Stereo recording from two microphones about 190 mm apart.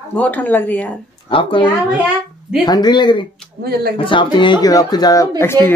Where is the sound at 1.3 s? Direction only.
25° left (ahead or behind).